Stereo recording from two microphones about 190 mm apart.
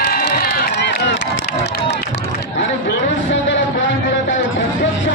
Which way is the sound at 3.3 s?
80° left.